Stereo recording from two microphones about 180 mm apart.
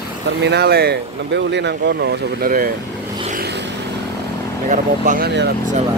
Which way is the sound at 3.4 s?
70° right (ahead or behind).